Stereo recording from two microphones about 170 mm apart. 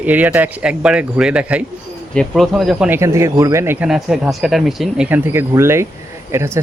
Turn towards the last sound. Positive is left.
turn(degrees=-15)  # may be behind; listen again after turning